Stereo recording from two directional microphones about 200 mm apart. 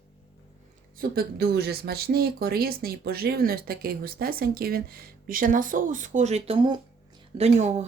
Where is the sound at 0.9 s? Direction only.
50° right (ahead or behind).